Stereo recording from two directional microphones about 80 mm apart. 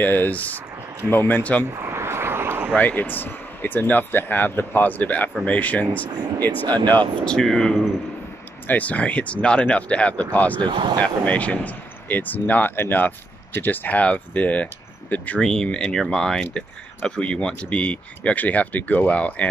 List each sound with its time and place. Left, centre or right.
0.0 s speech: left
1.9 s a sound: right
2.7 s speech: centre
7.2 s speech: centre
8.6 s speech: centre
10.6 s speech: right
11.0 s speech: centre
15.4 s speech: centre